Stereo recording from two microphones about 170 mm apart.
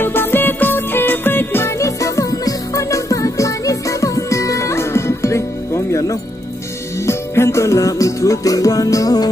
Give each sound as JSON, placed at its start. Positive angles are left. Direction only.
{"t": 0.0, "sound": "music", "side_deg": 10}